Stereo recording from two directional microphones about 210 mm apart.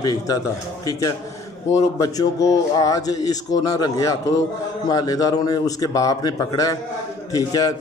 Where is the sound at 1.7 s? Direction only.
15° left (ahead or behind).